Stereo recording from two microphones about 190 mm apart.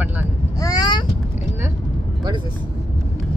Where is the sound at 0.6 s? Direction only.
20° left (ahead or behind).